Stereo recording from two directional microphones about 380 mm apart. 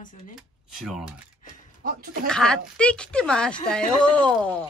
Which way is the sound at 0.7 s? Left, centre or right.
Centre.